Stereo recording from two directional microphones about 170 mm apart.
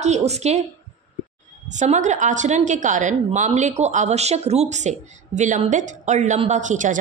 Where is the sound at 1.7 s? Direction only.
45° right (ahead or behind).